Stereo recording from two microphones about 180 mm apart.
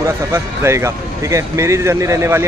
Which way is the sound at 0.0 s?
15° right (ahead or behind).